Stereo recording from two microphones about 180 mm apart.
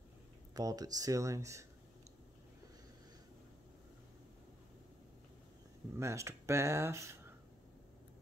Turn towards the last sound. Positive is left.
turn(degrees=-15)  # may be behind; listen again after turning